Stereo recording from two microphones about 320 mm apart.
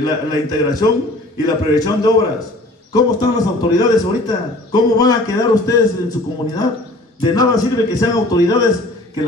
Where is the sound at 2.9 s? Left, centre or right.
Centre.